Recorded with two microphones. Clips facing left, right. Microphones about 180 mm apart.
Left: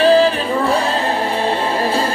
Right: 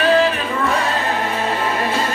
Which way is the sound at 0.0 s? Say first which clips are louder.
Left 4 dB; 30° left (ahead or behind).